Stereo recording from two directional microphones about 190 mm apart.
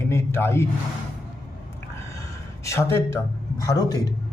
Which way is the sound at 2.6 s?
15° left (ahead or behind).